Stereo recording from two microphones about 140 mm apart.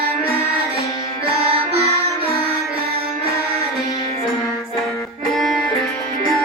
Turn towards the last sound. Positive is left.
turn(degrees=0)  # may be behind; listen again after turning